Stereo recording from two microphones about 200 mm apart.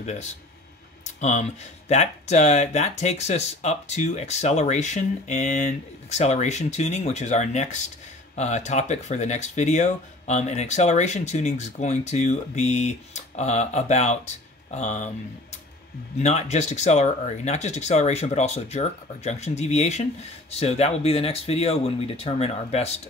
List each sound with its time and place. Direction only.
0.0 s speech: 35° left (ahead or behind)
16.2 s speech: 35° left (ahead or behind)